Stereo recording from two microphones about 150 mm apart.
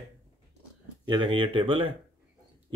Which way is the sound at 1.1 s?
30° right (ahead or behind).